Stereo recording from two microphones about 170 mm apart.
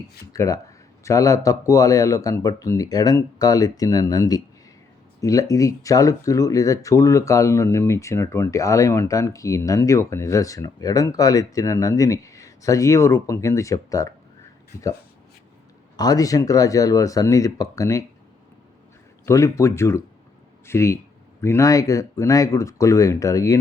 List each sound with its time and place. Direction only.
0.3 s speech: 20° left (ahead or behind)
16.0 s speech: 20° left (ahead or behind)
19.2 s speech: 15° left (ahead or behind)